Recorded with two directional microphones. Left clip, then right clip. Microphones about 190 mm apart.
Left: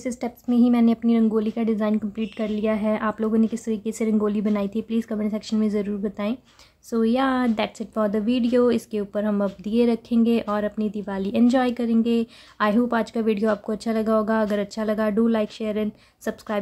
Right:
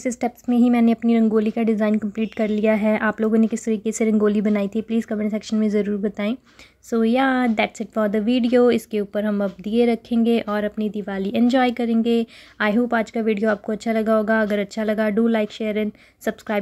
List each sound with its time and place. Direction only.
0.0 s speech: 15° right (ahead or behind)